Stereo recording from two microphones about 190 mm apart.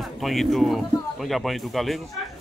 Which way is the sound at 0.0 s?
Centre (ahead or behind).